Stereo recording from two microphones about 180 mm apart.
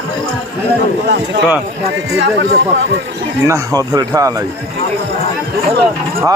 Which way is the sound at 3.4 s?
20° right (ahead or behind).